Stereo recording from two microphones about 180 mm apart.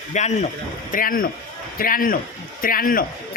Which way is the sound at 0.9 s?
50° left (ahead or behind).